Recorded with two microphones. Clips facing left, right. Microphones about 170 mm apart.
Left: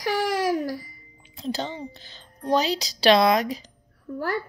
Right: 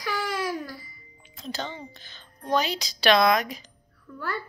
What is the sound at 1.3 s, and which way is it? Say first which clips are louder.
A woman's voice: left 5 dB; 35° left (ahead or behind).